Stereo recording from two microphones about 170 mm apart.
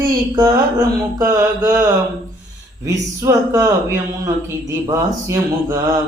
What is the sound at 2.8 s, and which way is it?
Speech, 20° right (ahead or behind).